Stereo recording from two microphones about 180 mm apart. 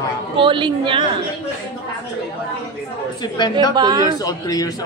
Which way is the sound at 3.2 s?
25° left (ahead or behind).